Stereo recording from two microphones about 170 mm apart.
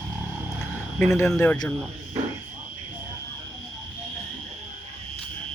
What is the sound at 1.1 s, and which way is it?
Speech, 15° left (ahead or behind).